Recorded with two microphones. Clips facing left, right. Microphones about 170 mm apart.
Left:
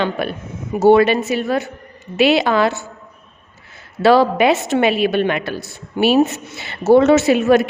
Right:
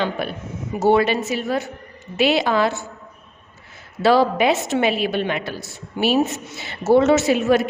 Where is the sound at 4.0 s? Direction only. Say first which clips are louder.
Left 3 dB; 65° left (ahead or behind).